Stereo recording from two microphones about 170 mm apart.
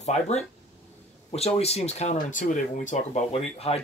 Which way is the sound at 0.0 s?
40° left (ahead or behind).